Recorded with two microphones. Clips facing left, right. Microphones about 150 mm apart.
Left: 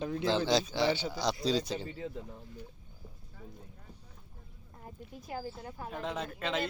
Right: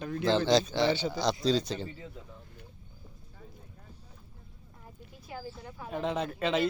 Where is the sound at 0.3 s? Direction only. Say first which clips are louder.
Right 4 dB; 10° left (ahead or behind).